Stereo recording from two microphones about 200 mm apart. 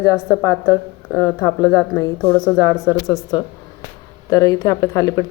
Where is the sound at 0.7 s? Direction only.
15° left (ahead or behind).